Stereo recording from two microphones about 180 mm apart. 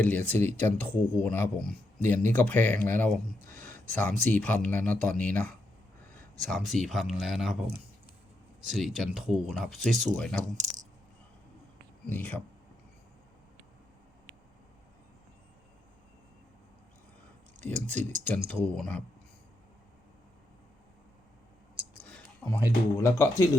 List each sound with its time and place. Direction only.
0.0 s speech: 10° left (ahead or behind)
8.6 s speech: centre (ahead or behind)
12.0 s speech: 10° left (ahead or behind)
17.6 s speech: 10° left (ahead or behind)
22.1 s a sound: 5° left (ahead or behind)
22.6 s speech: 15° left (ahead or behind)